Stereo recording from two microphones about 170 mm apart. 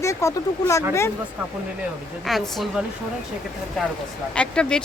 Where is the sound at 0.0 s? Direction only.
20° left (ahead or behind).